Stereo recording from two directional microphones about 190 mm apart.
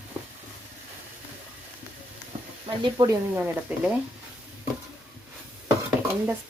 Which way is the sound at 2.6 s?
25° right (ahead or behind).